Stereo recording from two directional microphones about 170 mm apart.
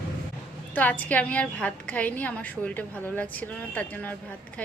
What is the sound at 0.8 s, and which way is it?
A woman's voice, 10° left (ahead or behind).